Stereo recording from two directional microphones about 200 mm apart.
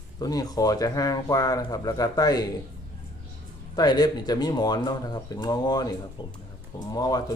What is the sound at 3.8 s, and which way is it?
Speech, 20° left (ahead or behind).